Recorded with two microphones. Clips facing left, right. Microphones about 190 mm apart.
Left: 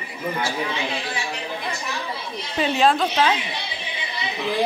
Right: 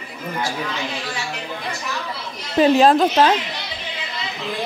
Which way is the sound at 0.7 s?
15° left (ahead or behind).